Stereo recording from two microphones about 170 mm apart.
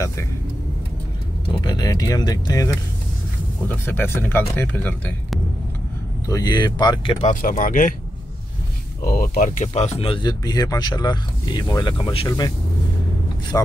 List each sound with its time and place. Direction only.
1.6 s speech: 25° left (ahead or behind)
6.2 s speech: 20° left (ahead or behind)
7.2 s speech: 50° left (ahead or behind)
9.0 s speech: 60° left (ahead or behind); by 12.5 s 25° left (ahead or behind)